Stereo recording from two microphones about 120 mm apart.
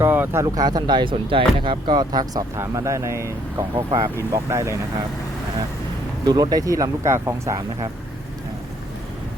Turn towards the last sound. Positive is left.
turn(degrees=-25)  # may be behind; listen again after turning